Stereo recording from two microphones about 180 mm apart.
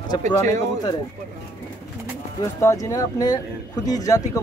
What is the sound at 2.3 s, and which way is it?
Speech, 20° left (ahead or behind).